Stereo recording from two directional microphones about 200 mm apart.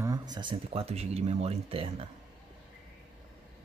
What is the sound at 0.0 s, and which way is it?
Speech, 20° right (ahead or behind).